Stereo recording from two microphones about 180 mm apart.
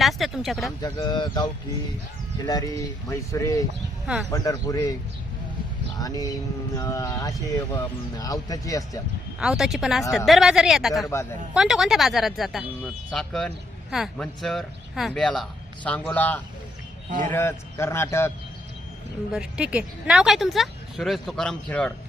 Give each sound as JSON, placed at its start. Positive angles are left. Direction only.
{"t": 0.0, "sound": "speech", "side_deg": 0}
{"t": 0.8, "sound": "speech", "side_deg": 25}
{"t": 2.5, "sound": "speech", "side_deg": 20}
{"t": 4.0, "sound": "speech", "side_deg": 0}
{"t": 4.3, "sound": "speech", "side_deg": 20}
{"t": 6.0, "sound": "speech", "side_deg": 20}
{"t": 9.4, "sound": "a man's voice", "side_deg": 0}
{"t": 19.3, "sound": "speech", "side_deg": -5}